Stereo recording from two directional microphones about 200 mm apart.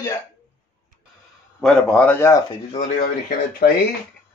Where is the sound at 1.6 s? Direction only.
5° left (ahead or behind).